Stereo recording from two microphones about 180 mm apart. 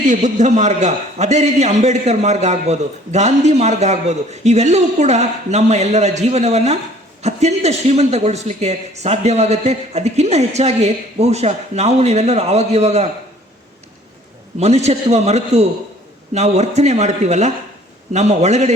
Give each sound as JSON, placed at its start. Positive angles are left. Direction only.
{"t": 0.0, "sound": "a man's voice", "side_deg": -45}
{"t": 14.6, "sound": "a man's voice", "side_deg": -40}